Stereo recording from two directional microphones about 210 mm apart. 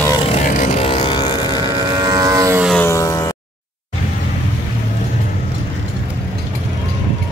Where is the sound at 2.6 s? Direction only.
5° left (ahead or behind).